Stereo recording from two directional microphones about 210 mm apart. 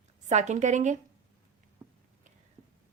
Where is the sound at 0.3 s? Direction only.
35° right (ahead or behind).